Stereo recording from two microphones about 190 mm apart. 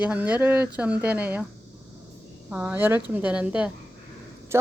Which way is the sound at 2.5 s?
10° right (ahead or behind).